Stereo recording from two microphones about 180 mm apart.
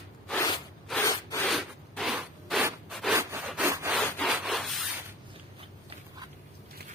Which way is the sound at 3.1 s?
10° right (ahead or behind).